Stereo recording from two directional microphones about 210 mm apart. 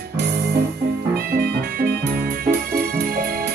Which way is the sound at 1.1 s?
50° right (ahead or behind).